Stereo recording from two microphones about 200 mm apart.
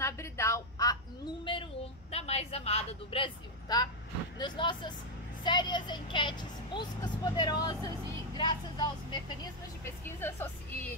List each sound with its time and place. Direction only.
0.0 s a sound: 15° left (ahead or behind)
4.4 s speech: 25° left (ahead or behind)
10.0 s a woman's voice: 10° left (ahead or behind)